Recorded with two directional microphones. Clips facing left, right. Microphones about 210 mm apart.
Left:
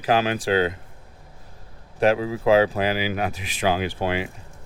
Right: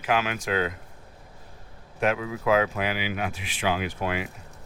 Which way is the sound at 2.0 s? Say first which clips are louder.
Left 6 dB; 30° left (ahead or behind).